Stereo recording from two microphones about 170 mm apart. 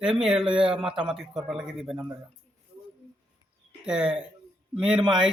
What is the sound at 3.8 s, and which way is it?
A man's voice, 5° right (ahead or behind).